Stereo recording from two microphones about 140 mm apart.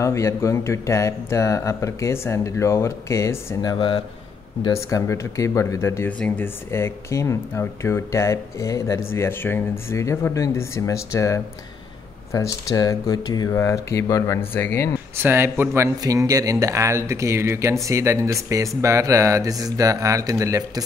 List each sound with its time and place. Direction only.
0.0 s speech: 20° left (ahead or behind)
3.7 s speech: 35° left (ahead or behind)
4.7 s speech: 20° left (ahead or behind)
15.1 s speech: 15° right (ahead or behind)